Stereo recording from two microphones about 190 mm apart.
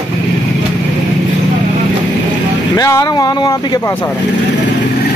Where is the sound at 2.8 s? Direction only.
20° left (ahead or behind).